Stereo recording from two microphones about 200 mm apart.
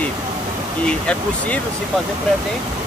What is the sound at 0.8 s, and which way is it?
Speech, 5° left (ahead or behind).